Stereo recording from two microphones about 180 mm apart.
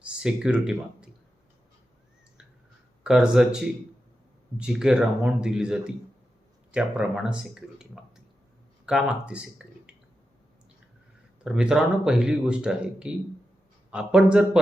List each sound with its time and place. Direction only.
0.2 s speech: 5° right (ahead or behind)
3.0 s speech: 5° right (ahead or behind)
11.4 s speech: 5° right (ahead or behind)